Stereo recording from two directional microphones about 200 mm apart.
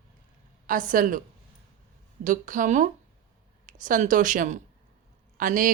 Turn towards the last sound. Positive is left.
turn(degrees=-40)  # may be behind; listen again after turning